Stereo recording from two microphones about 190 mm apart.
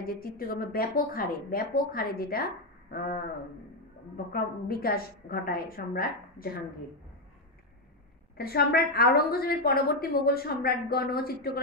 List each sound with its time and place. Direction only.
0.0 s a woman's voice: 50° left (ahead or behind)
2.9 s a sound: 50° left (ahead or behind)
4.3 s a woman's voice: 50° left (ahead or behind)
8.4 s a woman's voice: 55° left (ahead or behind)